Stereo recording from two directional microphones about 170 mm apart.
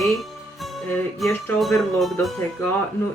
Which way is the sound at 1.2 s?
Centre (ahead or behind).